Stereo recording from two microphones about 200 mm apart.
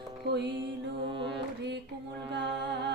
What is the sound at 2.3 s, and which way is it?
Music, 60° right (ahead or behind).